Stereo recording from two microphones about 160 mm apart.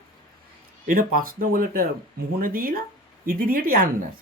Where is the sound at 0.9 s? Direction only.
60° right (ahead or behind).